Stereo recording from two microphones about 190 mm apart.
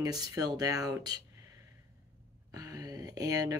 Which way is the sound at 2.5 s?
20° right (ahead or behind).